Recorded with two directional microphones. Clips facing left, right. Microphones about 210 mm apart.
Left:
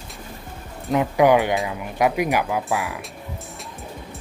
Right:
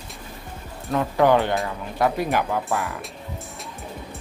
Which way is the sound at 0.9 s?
15° left (ahead or behind).